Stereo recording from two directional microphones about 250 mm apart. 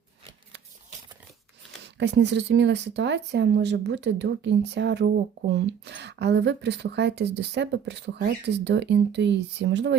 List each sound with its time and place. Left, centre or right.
2.0 s speech: right